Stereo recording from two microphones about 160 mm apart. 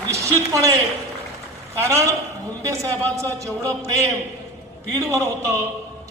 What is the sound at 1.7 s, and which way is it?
Speech, 15° right (ahead or behind).